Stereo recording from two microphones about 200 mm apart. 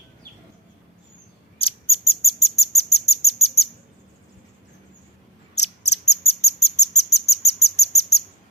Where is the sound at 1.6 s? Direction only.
30° left (ahead or behind).